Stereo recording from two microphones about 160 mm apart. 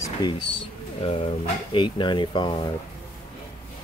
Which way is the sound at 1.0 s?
40° left (ahead or behind).